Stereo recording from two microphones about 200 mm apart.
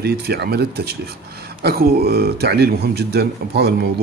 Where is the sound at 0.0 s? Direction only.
55° right (ahead or behind).